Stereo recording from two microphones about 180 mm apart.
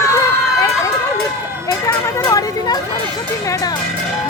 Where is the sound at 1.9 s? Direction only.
20° left (ahead or behind).